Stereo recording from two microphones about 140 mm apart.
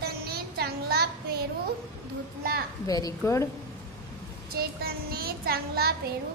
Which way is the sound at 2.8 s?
25° left (ahead or behind).